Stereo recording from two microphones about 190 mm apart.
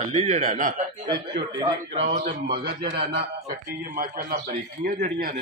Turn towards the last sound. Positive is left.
turn(degrees=-50)  # may be behind; listen again after turning